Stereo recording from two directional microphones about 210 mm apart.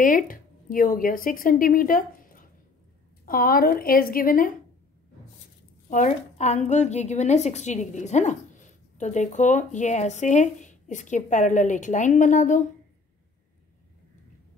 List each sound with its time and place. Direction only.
0.0 s speech: 40° left (ahead or behind)
5.9 s a woman's voice: 35° left (ahead or behind)